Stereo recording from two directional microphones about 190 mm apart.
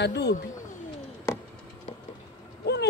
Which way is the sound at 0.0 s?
60° left (ahead or behind).